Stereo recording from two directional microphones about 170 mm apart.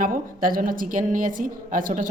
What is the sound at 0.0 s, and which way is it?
A woman's voice, 55° right (ahead or behind).